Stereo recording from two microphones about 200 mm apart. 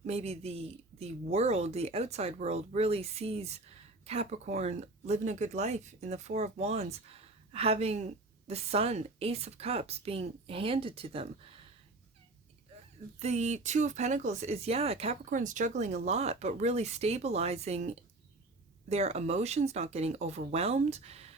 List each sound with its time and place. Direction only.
0.1 s a woman's voice: 30° right (ahead or behind)
13.1 s speech: 35° right (ahead or behind)